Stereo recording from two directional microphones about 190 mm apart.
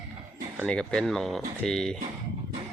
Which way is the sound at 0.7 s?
5° left (ahead or behind).